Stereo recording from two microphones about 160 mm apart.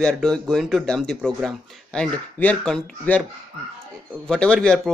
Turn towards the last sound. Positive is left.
turn(degrees=0)  # may be behind; listen again after turning